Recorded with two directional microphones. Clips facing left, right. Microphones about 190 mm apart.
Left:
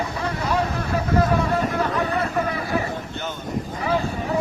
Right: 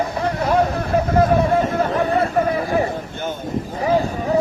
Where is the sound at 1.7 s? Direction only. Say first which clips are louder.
Right 5 dB; 45° right (ahead or behind).